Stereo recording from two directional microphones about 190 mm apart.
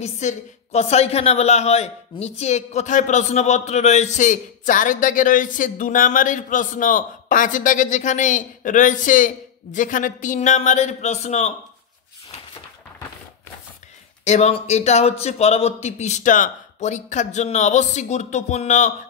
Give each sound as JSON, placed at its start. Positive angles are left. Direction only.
{"t": 0.0, "sound": "a woman's voice", "side_deg": 35}
{"t": 14.2, "sound": "a woman's voice", "side_deg": 35}